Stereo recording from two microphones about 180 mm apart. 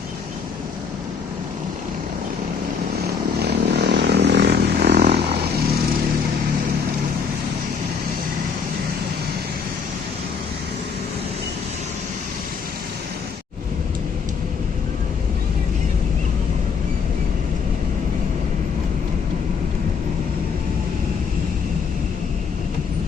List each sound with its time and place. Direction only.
3.4 s vehicle: 70° right (ahead or behind)